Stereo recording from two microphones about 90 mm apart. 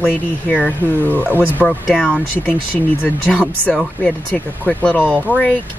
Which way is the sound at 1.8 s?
15° left (ahead or behind).